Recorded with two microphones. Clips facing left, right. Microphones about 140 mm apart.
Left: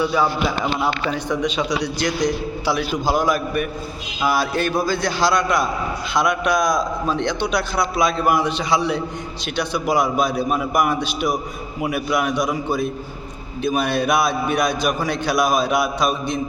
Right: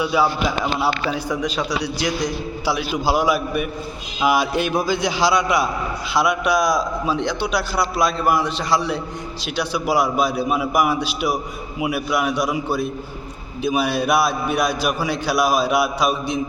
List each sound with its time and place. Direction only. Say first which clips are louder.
0.0 s a man's voice: even; 10° right (ahead or behind)